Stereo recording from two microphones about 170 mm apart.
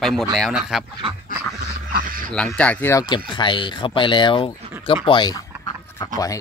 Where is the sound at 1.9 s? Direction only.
55° right (ahead or behind).